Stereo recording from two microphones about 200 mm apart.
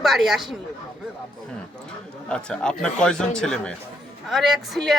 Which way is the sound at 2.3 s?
5° left (ahead or behind).